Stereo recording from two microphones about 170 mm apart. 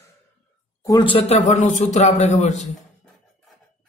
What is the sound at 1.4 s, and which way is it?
A man's voice, 45° left (ahead or behind).